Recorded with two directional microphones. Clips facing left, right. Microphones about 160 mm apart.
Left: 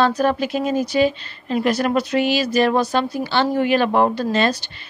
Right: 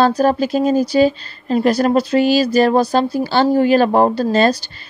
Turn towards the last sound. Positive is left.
turn(degrees=-35)  # may be behind; listen again after turning